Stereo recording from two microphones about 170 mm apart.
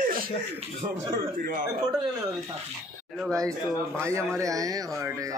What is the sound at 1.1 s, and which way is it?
Speech, 55° right (ahead or behind).